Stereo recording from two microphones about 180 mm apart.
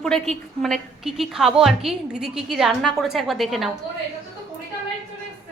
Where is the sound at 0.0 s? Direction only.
5° left (ahead or behind).